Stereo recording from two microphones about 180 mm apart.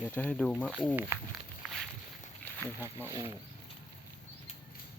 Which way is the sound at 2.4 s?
10° left (ahead or behind).